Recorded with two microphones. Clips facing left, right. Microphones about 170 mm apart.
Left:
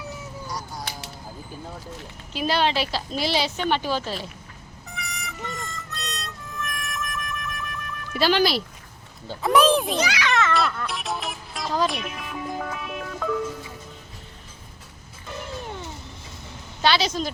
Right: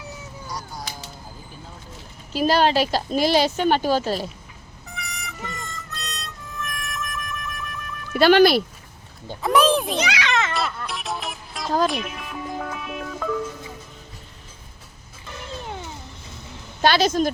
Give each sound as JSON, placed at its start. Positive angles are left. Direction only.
{"t": 0.4, "sound": "music", "side_deg": 0}
{"t": 2.3, "sound": "speech", "side_deg": -40}
{"t": 4.9, "sound": "music", "side_deg": 0}
{"t": 8.2, "sound": "speech", "side_deg": -55}
{"t": 9.4, "sound": "a child's voice", "side_deg": 0}
{"t": 10.0, "sound": "a child's voice", "side_deg": -20}
{"t": 10.5, "sound": "music", "side_deg": 0}
{"t": 16.8, "sound": "speech", "side_deg": -50}